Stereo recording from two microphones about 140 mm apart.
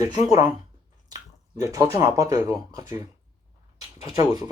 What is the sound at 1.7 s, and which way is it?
Speech, 25° right (ahead or behind).